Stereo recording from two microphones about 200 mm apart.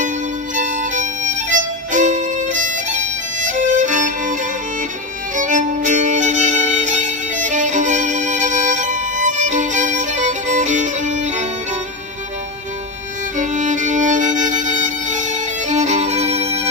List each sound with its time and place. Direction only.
0.6 s music: 40° right (ahead or behind)
13.4 s music: 40° right (ahead or behind)
15.7 s violin: 35° right (ahead or behind)